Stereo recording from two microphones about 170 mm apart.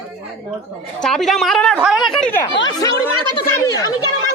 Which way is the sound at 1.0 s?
Centre (ahead or behind).